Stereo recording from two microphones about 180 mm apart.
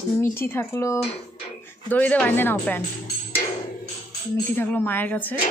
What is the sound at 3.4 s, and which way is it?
Music, 40° left (ahead or behind).